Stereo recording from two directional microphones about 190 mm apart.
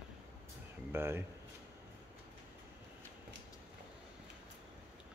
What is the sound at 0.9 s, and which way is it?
Speech, 10° right (ahead or behind).